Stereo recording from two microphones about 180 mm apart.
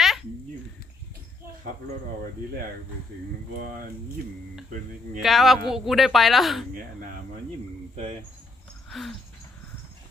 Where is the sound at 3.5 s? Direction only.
50° right (ahead or behind).